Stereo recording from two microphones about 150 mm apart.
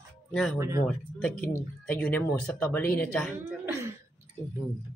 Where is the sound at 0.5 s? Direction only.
20° right (ahead or behind).